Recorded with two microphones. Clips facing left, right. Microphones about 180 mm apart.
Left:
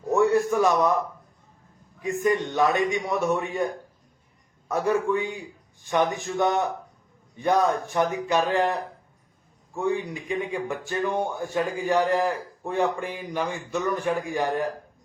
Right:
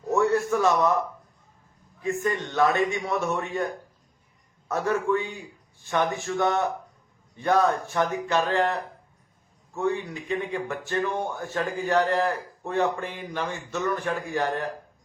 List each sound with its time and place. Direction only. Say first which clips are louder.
0.1 s a man's voice: left 2 dB; 15° left (ahead or behind)
2.0 s a man's voice: left 3 dB; 15° left (ahead or behind)
4.7 s a man's voice: left 1 dB; 15° left (ahead or behind)
9.7 s a man's voice: left 1 dB; 15° left (ahead or behind)